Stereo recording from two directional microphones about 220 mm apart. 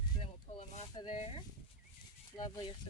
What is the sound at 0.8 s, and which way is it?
Speech, 20° left (ahead or behind).